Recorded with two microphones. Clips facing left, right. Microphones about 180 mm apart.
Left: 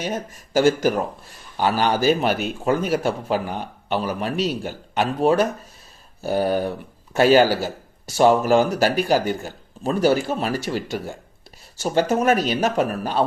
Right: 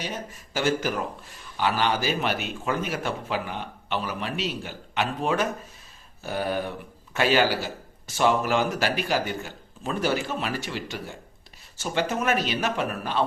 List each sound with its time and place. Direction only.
0.0 s a man's voice: 45° left (ahead or behind)